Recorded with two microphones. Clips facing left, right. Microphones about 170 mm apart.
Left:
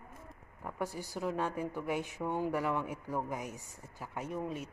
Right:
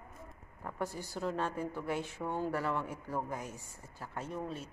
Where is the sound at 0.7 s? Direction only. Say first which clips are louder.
Left 1 dB; 10° left (ahead or behind).